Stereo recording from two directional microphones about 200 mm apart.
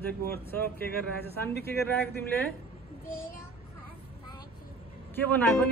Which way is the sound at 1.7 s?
10° left (ahead or behind).